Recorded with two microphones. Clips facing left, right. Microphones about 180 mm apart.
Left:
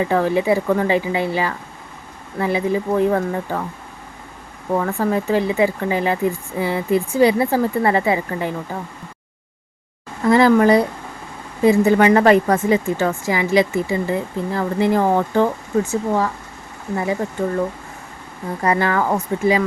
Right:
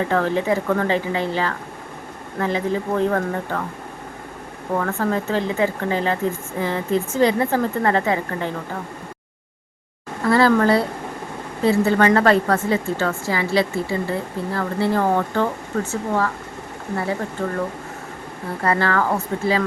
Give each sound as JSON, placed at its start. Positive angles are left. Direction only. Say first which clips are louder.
{"t": 0.0, "sound": "speech", "louder": "left 3 dB", "side_deg": 10}
{"t": 4.8, "sound": "speech", "louder": "left 2 dB", "side_deg": 15}
{"t": 10.2, "sound": "speech", "louder": "left 3 dB", "side_deg": 15}
{"t": 18.6, "sound": "speech", "louder": "left 2 dB", "side_deg": 15}